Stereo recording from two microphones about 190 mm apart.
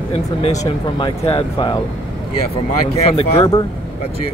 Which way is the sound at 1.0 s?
30° left (ahead or behind).